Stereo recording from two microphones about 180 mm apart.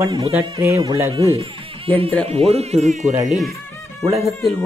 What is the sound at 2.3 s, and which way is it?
Speech, 35° right (ahead or behind).